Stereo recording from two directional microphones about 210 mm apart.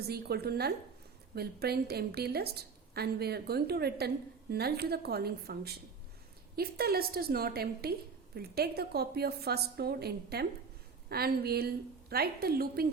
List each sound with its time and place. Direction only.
0.1 s a woman's voice: 50° right (ahead or behind)